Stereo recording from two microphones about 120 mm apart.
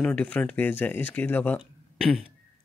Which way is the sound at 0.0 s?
10° left (ahead or behind).